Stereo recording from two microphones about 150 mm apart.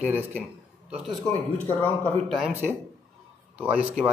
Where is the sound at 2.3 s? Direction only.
5° right (ahead or behind).